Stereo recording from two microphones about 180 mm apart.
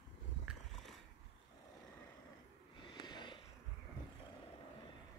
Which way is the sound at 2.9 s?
25° left (ahead or behind).